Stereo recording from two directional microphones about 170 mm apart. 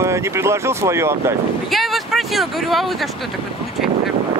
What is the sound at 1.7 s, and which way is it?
Speech, centre (ahead or behind).